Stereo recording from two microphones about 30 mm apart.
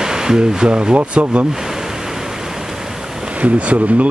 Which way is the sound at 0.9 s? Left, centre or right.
Right.